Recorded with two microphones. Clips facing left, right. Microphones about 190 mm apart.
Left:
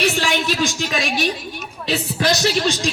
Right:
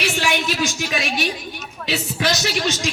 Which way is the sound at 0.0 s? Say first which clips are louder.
Left 2 dB; 35° left (ahead or behind).